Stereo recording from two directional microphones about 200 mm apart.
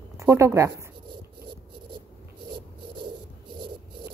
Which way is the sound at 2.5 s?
25° right (ahead or behind).